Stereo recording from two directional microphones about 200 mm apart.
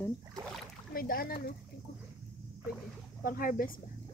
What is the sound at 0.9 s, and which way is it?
Speech, 45° left (ahead or behind).